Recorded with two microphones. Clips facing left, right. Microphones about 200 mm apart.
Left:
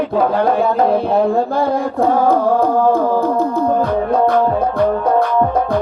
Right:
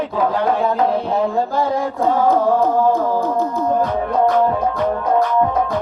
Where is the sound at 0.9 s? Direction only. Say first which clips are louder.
Left 4 dB; 60° left (ahead or behind).